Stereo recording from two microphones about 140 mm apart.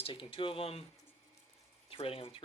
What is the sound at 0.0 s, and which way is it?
Speech, 40° left (ahead or behind).